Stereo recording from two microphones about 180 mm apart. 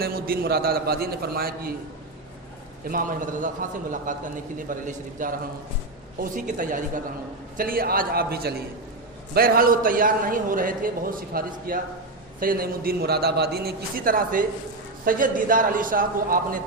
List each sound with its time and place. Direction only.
0.0 s a man's voice: 55° right (ahead or behind)
2.9 s a man's voice: 45° right (ahead or behind)